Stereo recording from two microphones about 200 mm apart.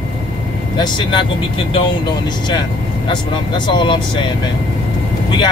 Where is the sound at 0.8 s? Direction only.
25° left (ahead or behind).